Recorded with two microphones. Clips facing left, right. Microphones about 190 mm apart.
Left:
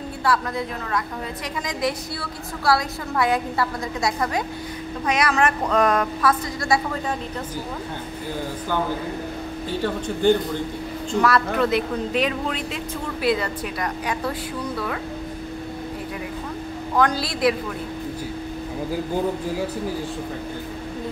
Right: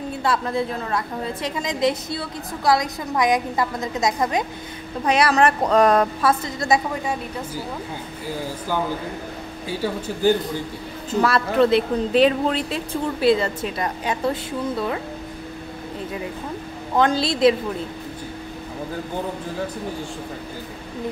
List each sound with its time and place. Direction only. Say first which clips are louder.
0.2 s speech: right 1 dB; 25° right (ahead or behind)
5.0 s speech: right 3 dB; 30° right (ahead or behind); by 7.6 s 15° right (ahead or behind)
9.7 s speech: even; 10° right (ahead or behind)
11.1 s speech: right 2 dB; 25° right (ahead or behind)
16.9 s speech: right 2 dB; 25° right (ahead or behind)